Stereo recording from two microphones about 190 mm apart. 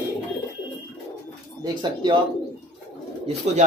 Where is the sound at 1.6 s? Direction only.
25° right (ahead or behind).